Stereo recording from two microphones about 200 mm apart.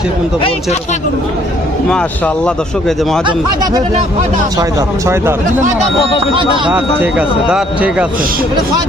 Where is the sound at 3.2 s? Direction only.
20° right (ahead or behind).